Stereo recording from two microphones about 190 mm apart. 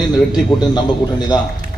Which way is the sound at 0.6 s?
20° left (ahead or behind).